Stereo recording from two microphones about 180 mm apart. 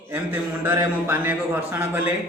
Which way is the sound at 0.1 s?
10° right (ahead or behind).